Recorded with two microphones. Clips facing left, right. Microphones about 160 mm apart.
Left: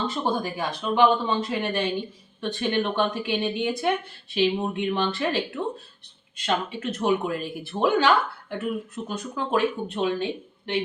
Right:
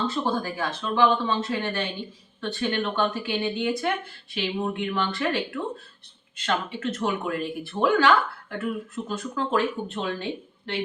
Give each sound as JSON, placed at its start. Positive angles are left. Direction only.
{"t": 0.1, "sound": "speech", "side_deg": 20}